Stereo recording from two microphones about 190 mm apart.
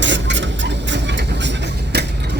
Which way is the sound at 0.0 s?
70° right (ahead or behind).